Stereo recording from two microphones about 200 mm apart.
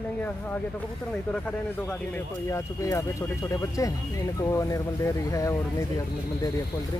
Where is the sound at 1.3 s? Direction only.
5° left (ahead or behind).